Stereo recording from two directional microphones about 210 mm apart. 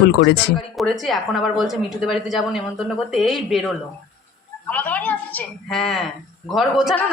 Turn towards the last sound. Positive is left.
turn(degrees=0)  # may be behind; listen again after turning